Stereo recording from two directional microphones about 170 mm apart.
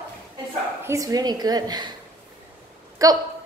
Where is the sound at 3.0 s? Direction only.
20° right (ahead or behind).